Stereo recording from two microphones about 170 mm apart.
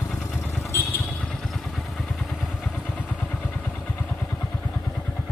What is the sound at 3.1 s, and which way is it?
Vehicle, 10° left (ahead or behind).